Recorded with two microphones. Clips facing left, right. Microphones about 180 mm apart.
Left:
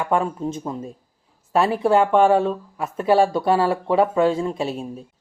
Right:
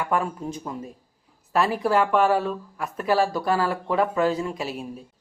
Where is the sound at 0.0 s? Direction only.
25° left (ahead or behind).